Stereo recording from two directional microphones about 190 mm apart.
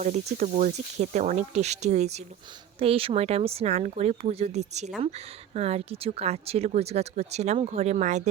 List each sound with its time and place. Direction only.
0.0 s speech: 35° right (ahead or behind)